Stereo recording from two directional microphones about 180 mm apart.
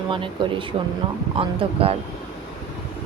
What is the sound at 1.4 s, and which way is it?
Speech, 30° right (ahead or behind).